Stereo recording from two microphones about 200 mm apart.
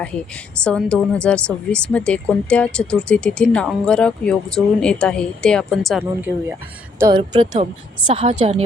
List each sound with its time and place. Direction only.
0.6 s speech: 5° left (ahead or behind)
7.2 s a woman's voice: 30° right (ahead or behind)